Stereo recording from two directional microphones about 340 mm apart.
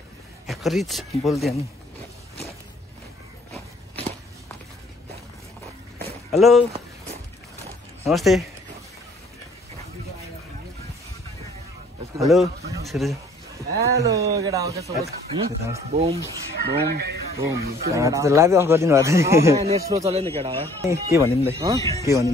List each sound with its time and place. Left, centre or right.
0.5 s speech: centre
6.3 s speech: centre
8.0 s speech: centre
12.2 s a man's voice: centre
16.5 s speech: right
17.8 s a man's voice: centre